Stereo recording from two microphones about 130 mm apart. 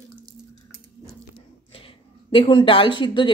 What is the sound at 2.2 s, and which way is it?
A woman's voice, 40° left (ahead or behind).